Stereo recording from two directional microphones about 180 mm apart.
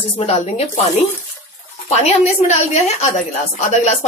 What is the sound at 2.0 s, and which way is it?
A woman's voice, 35° left (ahead or behind).